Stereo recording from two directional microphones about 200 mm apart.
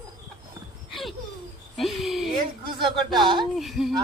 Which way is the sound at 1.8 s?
Centre (ahead or behind).